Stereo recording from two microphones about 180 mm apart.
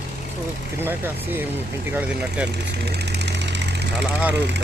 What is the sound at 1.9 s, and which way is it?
Speech, 5° right (ahead or behind).